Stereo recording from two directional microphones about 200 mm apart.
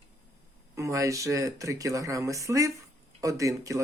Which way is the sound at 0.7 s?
15° right (ahead or behind).